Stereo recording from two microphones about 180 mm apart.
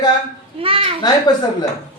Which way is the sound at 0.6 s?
30° right (ahead or behind).